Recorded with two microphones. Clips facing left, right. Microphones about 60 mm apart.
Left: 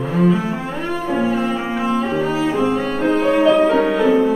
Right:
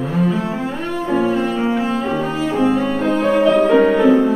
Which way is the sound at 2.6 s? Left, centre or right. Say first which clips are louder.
Right 2 dB; centre.